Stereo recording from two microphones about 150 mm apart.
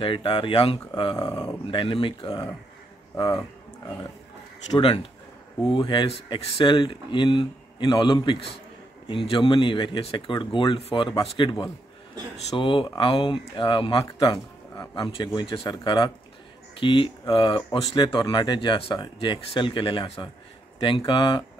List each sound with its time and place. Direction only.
0.0 s speech: 35° left (ahead or behind)
1.7 s speech: 35° left (ahead or behind)
4.7 s speech: 30° left (ahead or behind)